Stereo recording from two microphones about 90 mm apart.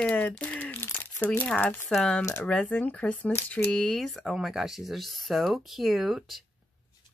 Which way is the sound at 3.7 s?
5° left (ahead or behind).